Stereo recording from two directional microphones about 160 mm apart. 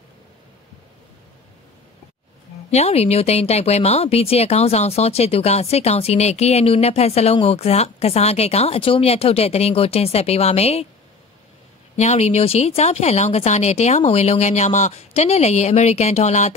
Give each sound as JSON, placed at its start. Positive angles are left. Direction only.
{"t": 2.7, "sound": "speech", "side_deg": 40}
{"t": 12.0, "sound": "speech", "side_deg": 45}